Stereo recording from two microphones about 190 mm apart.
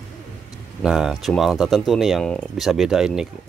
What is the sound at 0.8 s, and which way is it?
Speech, centre (ahead or behind).